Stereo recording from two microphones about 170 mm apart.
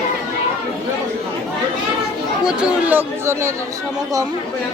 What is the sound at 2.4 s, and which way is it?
Speech, 10° right (ahead or behind).